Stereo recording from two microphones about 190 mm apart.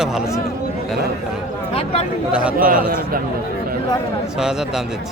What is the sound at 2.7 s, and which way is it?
Speech, 50° right (ahead or behind).